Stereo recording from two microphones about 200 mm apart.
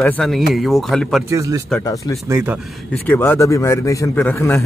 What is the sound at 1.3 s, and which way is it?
Speech, 15° right (ahead or behind).